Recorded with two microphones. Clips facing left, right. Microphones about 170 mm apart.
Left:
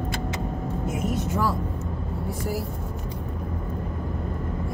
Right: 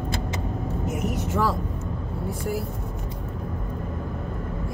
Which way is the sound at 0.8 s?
90° right.